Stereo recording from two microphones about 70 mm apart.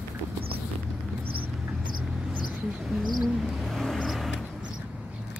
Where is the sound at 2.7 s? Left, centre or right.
Centre.